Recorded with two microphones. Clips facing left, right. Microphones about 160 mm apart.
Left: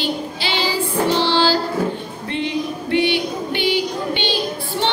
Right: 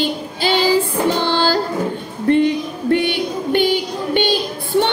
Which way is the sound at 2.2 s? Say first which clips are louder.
Right 8 dB; 50° right (ahead or behind).